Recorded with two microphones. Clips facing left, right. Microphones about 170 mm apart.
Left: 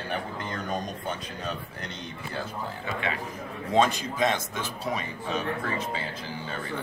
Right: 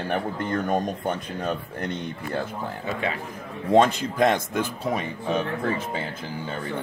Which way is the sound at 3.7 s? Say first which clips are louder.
Right 5 dB; 60° right (ahead or behind).